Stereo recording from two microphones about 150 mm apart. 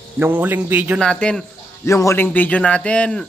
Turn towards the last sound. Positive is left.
turn(degrees=10)  # may be behind; listen again after turning